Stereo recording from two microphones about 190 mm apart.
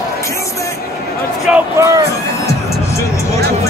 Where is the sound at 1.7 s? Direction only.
15° right (ahead or behind).